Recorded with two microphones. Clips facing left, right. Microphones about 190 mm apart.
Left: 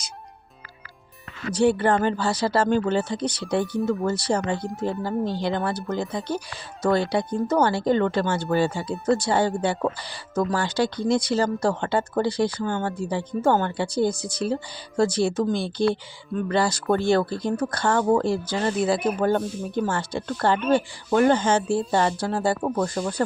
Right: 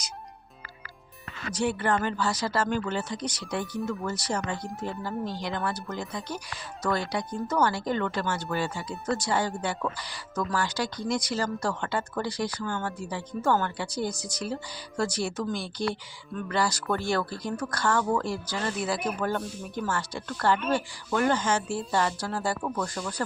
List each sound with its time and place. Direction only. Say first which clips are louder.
1.5 s speech: left 7 dB; 30° left (ahead or behind)